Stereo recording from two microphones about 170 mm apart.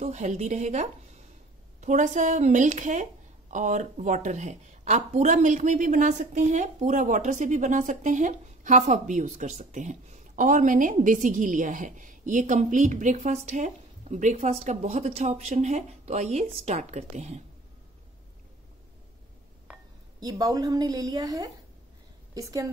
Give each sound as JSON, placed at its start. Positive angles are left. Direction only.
{"t": 0.0, "sound": "speech", "side_deg": -45}
{"t": 20.2, "sound": "a woman's voice", "side_deg": -20}